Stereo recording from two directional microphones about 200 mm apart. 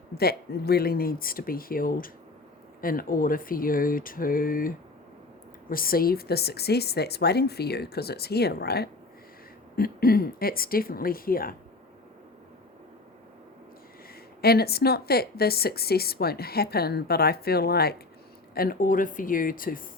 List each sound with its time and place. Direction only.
0.1 s speech: 50° left (ahead or behind)
14.4 s speech: 50° left (ahead or behind)